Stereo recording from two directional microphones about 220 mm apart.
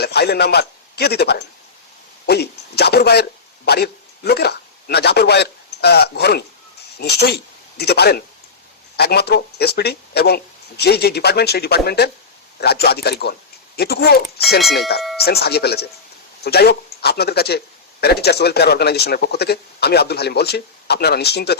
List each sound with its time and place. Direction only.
0.0 s a man's voice: 45° left (ahead or behind)
14.6 s speech: centre (ahead or behind)
15.2 s speech: 45° left (ahead or behind)